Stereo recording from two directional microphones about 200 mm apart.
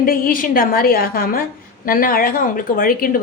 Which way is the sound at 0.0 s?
45° left (ahead or behind).